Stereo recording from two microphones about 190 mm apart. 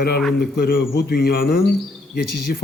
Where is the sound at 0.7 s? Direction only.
55° left (ahead or behind).